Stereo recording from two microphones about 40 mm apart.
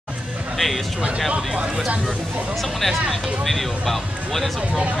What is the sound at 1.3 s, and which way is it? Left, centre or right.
Speech, right.